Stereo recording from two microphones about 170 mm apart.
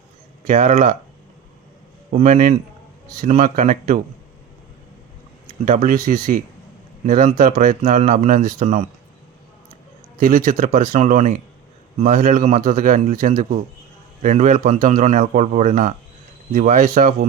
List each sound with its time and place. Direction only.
0.5 s speech: 45° right (ahead or behind)
2.1 s speech: 45° right (ahead or behind)
5.6 s speech: 50° right (ahead or behind)
10.2 s speech: 50° right (ahead or behind)